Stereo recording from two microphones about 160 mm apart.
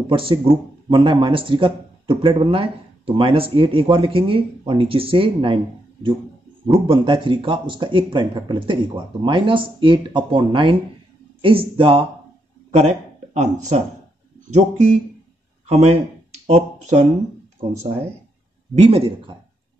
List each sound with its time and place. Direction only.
0.0 s speech: 35° right (ahead or behind)
6.7 s speech: 30° right (ahead or behind)
13.3 s speech: 45° right (ahead or behind)
18.8 s speech: 35° right (ahead or behind)